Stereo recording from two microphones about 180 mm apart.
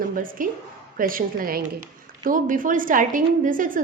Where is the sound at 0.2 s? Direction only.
50° right (ahead or behind).